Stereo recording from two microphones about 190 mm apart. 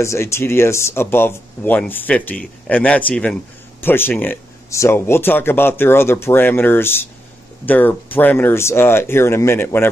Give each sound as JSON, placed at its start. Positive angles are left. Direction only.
{"t": 0.0, "sound": "speech", "side_deg": 15}